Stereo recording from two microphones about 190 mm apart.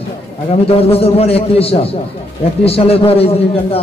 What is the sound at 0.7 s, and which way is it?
A man's voice, 30° left (ahead or behind).